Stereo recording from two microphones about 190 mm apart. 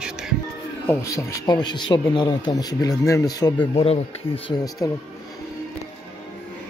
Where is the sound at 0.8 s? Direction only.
15° left (ahead or behind).